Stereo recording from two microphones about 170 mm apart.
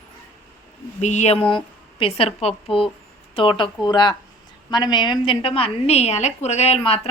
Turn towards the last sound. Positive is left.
turn(degrees=35)  # may be behind; listen again after turning